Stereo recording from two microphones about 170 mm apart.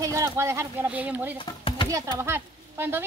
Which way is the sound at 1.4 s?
30° left (ahead or behind).